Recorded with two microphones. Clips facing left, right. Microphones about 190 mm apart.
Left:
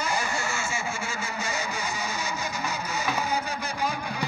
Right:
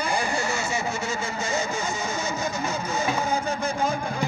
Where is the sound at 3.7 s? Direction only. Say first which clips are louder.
Right 4 dB; 50° right (ahead or behind).